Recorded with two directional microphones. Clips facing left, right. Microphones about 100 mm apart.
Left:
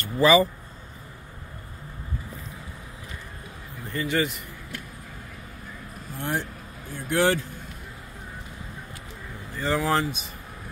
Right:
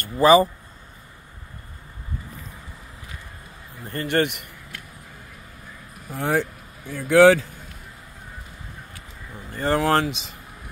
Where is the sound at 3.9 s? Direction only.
60° right (ahead or behind).